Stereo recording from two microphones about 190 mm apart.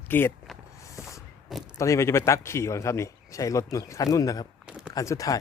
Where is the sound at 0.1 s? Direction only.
10° left (ahead or behind).